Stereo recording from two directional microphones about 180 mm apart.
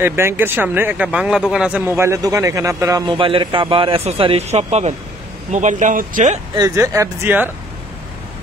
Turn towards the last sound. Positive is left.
turn(degrees=-10)  # may be behind; listen again after turning